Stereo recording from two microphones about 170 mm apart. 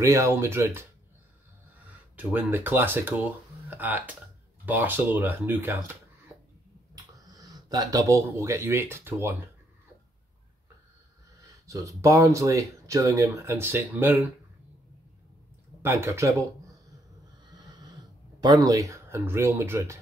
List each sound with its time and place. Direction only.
0.0 s speech: 15° right (ahead or behind)
2.1 s speech: 10° right (ahead or behind)
7.3 s speech: 20° right (ahead or behind)
11.6 s speech: 20° right (ahead or behind)
15.8 s speech: 15° right (ahead or behind)
18.4 s speech: 20° right (ahead or behind)